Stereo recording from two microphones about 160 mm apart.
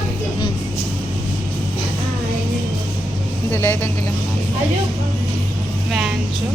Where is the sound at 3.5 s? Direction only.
15° left (ahead or behind).